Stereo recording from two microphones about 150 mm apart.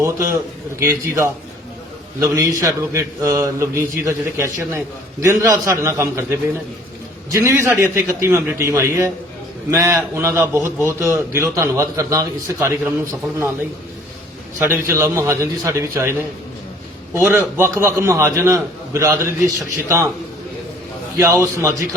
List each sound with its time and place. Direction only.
0.0 s a man's voice: 20° right (ahead or behind)
7.3 s a man's voice: 20° right (ahead or behind)
14.6 s a man's voice: 15° right (ahead or behind)
17.2 s a man's voice: 15° right (ahead or behind)
21.2 s a man's voice: 20° right (ahead or behind)